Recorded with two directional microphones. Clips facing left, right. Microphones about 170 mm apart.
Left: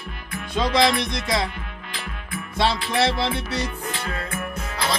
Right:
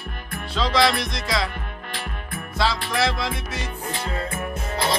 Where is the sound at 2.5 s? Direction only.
25° left (ahead or behind).